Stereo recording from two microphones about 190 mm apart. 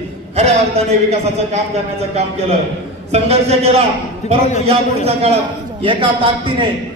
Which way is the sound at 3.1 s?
35° right (ahead or behind).